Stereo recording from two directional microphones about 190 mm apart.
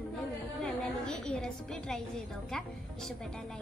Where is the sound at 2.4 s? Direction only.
5° left (ahead or behind).